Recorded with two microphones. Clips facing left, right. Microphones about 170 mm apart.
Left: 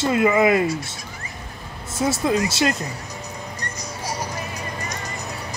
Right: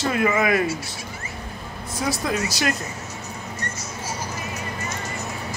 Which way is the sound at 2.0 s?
25° left (ahead or behind).